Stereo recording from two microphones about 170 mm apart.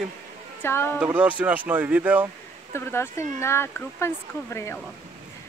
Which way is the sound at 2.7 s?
15° left (ahead or behind).